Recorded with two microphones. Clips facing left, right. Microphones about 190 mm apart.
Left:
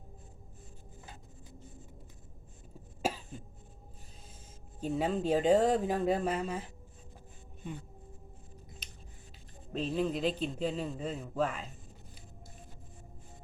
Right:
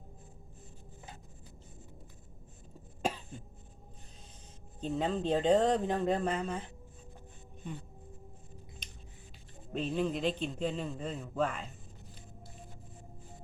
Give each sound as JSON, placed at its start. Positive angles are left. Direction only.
{"t": 3.0, "sound": "cough", "side_deg": 5}
{"t": 4.8, "sound": "speech", "side_deg": 10}
{"t": 8.8, "sound": "scissors", "side_deg": 5}
{"t": 9.7, "sound": "a man's voice", "side_deg": 0}